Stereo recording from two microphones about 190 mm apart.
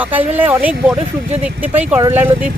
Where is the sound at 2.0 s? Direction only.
10° right (ahead or behind).